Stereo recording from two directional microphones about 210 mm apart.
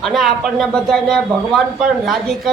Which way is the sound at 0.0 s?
Centre (ahead or behind).